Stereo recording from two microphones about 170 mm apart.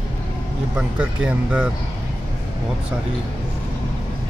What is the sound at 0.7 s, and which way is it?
Speech, 5° right (ahead or behind).